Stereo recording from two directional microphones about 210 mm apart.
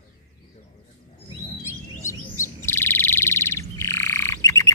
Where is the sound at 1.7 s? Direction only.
15° left (ahead or behind).